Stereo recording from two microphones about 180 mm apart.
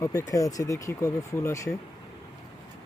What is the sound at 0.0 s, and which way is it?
Speech, 15° left (ahead or behind).